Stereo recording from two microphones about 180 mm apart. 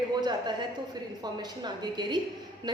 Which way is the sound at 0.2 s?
25° right (ahead or behind).